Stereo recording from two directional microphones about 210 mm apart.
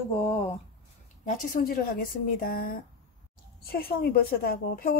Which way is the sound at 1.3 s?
40° left (ahead or behind).